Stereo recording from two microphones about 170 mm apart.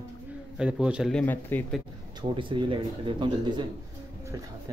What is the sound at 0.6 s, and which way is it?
Speech, 5° right (ahead or behind).